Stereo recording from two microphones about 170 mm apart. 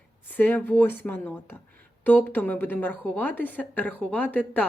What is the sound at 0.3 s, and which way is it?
A woman's voice, 10° left (ahead or behind).